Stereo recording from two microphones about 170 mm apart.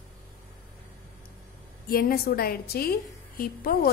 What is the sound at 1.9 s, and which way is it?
A woman's voice, 60° left (ahead or behind).